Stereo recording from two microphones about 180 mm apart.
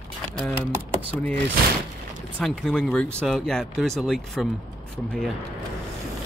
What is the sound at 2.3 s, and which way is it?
Speech, 5° left (ahead or behind).